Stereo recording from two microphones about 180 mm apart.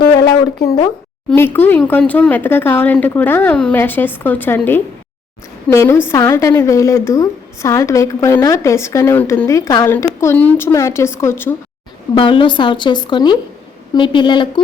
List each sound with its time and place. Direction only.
0.2 s a sound: 20° left (ahead or behind)
1.5 s a woman's voice: 10° left (ahead or behind)
12.1 s a woman's voice: 30° left (ahead or behind)